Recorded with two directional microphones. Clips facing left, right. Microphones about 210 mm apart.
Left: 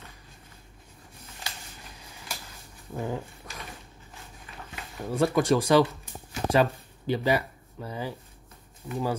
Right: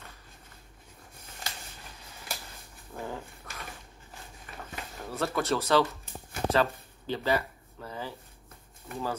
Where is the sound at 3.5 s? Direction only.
15° left (ahead or behind).